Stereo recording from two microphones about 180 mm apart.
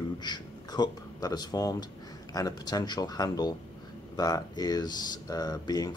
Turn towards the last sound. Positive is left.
turn(degrees=20)  # may be behind; listen again after turning